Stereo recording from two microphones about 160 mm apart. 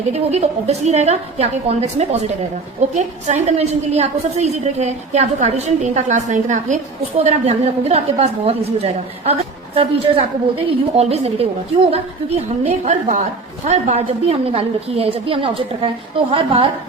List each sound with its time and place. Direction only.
0.1 s a woman's voice: 40° right (ahead or behind)